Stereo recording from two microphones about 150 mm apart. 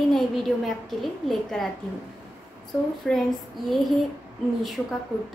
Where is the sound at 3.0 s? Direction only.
Centre (ahead or behind).